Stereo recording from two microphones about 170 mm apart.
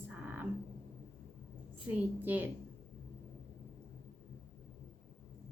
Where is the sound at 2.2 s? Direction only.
10° right (ahead or behind).